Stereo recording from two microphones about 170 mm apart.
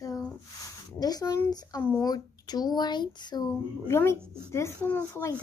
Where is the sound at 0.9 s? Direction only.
20° left (ahead or behind).